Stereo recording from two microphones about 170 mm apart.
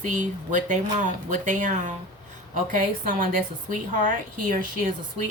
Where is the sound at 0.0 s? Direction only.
45° right (ahead or behind).